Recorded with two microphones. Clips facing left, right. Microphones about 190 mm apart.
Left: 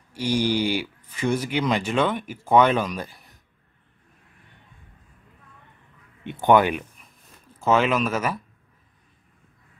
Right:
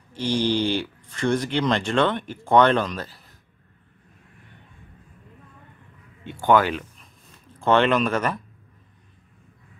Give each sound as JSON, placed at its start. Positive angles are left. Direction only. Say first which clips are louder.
{"t": 0.1, "sound": "speech", "louder": "even", "side_deg": 10}
{"t": 6.2, "sound": "speech", "louder": "left 1 dB", "side_deg": 20}
{"t": 7.5, "sound": "speech", "louder": "right 2 dB", "side_deg": 5}